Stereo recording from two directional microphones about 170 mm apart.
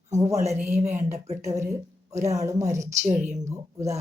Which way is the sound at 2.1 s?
40° right (ahead or behind).